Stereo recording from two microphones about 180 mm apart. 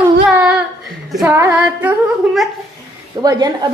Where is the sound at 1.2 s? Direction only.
15° right (ahead or behind).